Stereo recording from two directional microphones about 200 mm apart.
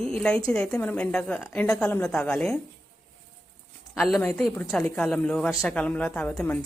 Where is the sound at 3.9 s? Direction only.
Centre (ahead or behind).